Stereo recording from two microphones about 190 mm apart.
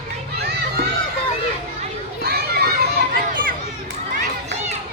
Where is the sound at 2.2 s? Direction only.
55° right (ahead or behind).